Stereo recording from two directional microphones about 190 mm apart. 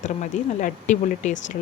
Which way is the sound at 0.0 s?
40° left (ahead or behind).